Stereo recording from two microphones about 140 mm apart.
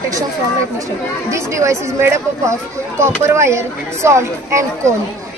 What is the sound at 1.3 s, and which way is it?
Speech, 20° right (ahead or behind).